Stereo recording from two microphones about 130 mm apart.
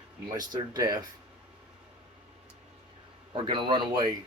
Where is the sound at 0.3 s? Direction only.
30° right (ahead or behind).